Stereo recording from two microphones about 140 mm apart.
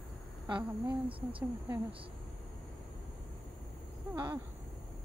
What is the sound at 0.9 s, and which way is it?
Speech, 40° right (ahead or behind).